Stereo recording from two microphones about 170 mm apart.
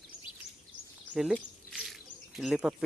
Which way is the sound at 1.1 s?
5° right (ahead or behind).